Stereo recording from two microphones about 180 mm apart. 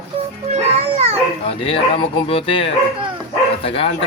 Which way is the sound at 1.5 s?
35° left (ahead or behind).